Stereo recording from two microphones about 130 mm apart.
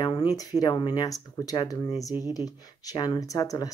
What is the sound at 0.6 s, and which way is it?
Speech, 30° left (ahead or behind).